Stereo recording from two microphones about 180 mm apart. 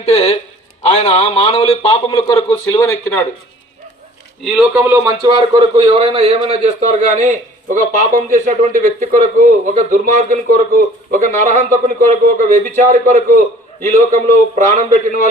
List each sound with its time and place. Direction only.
0.0 s a man's voice: 35° left (ahead or behind)
2.0 s speech: 20° left (ahead or behind)
4.4 s speech: 5° right (ahead or behind)
5.0 s a man's voice: 25° right (ahead or behind); by 14.8 s 40° right (ahead or behind)